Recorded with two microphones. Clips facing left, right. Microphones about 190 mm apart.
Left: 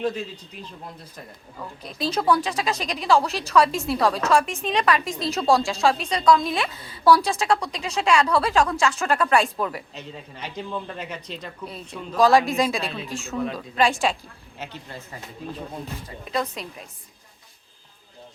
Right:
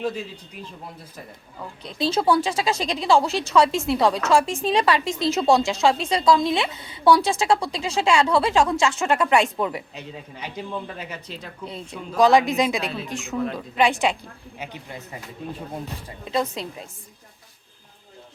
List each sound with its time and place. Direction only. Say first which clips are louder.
1.8 s a woman's voice: right 3 dB; 25° right (ahead or behind)
9.9 s speech: right 1 dB; 10° right (ahead or behind)
11.6 s a woman's voice: right 1 dB; 25° right (ahead or behind)
13.3 s speech: right 1 dB; centre (ahead or behind)
14.0 s a woman's voice: right 1 dB; 20° right (ahead or behind)
16.0 s a woman's voice: right 3 dB; 25° right (ahead or behind)